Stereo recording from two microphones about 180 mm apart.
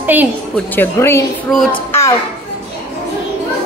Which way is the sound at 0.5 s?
10° left (ahead or behind).